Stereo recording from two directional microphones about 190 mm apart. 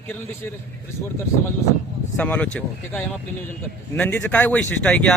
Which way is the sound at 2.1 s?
10° left (ahead or behind).